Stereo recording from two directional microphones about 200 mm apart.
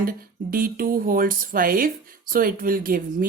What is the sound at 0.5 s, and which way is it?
Speech, 45° right (ahead or behind).